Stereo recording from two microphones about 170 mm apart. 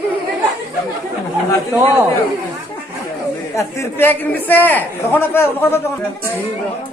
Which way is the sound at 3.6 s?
15° left (ahead or behind).